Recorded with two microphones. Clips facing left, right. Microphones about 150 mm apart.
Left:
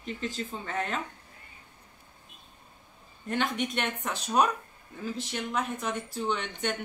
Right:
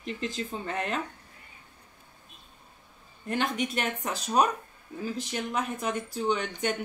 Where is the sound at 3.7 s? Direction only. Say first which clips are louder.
Right 1 dB; 5° right (ahead or behind).